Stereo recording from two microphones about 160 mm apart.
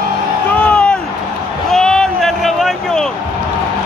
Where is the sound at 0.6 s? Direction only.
5° left (ahead or behind).